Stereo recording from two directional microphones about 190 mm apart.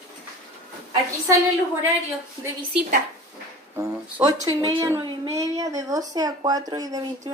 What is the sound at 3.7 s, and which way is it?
A woman's voice, 15° right (ahead or behind).